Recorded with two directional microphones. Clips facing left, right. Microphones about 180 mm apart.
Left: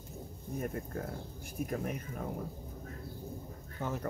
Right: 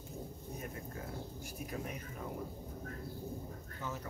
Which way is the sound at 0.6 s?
50° left (ahead or behind).